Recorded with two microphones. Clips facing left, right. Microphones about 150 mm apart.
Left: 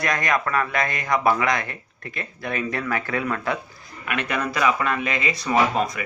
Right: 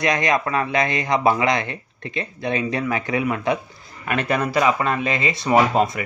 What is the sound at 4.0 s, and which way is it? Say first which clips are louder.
A man's voice: right 4 dB; 35° right (ahead or behind).